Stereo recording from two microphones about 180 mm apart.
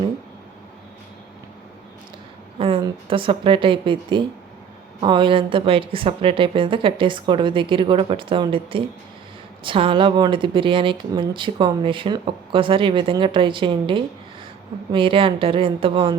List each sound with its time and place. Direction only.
2.6 s speech: 30° right (ahead or behind)